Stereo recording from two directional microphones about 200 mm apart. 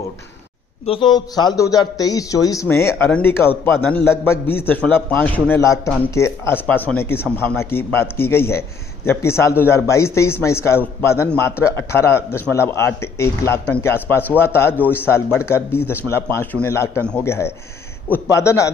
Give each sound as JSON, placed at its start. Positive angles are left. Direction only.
{"t": 0.8, "sound": "a man's voice", "side_deg": 25}